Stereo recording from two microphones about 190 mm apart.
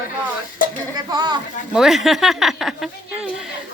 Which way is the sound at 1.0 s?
20° right (ahead or behind).